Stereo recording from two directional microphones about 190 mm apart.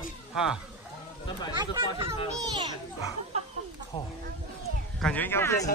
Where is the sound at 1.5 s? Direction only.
25° right (ahead or behind).